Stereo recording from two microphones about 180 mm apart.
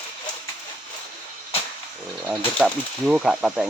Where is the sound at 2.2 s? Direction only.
Centre (ahead or behind).